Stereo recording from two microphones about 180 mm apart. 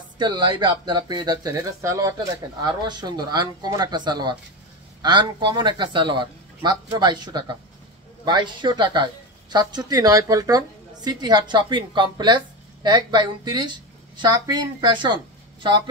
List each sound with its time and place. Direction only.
0.2 s speech: 25° right (ahead or behind)